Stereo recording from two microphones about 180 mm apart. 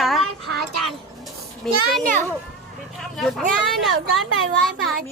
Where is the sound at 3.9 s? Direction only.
90° right.